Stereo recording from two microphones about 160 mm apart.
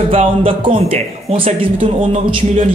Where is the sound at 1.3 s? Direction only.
35° right (ahead or behind).